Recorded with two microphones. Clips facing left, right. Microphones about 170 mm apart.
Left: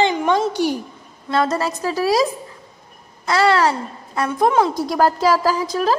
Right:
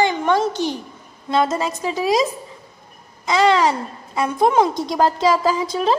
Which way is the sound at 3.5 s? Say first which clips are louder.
Even; 15° right (ahead or behind).